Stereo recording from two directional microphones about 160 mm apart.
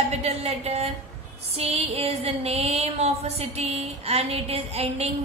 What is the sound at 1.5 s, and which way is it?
Speech, 40° right (ahead or behind).